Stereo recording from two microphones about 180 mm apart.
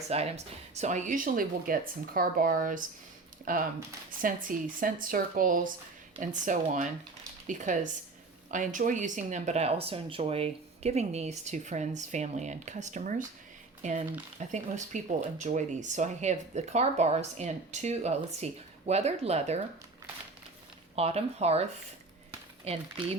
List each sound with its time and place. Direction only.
0.1 s speech: 35° right (ahead or behind)
20.9 s speech: 35° right (ahead or behind)
22.3 s a sound: 35° right (ahead or behind)